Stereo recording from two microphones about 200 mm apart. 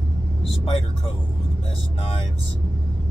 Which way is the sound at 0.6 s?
25° left (ahead or behind).